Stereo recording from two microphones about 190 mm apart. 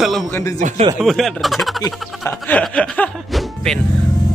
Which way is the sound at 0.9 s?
Centre (ahead or behind).